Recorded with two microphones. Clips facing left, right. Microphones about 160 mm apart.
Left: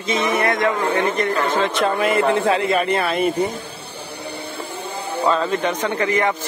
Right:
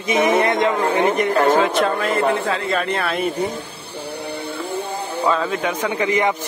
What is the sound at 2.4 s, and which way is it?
Speech, 15° left (ahead or behind).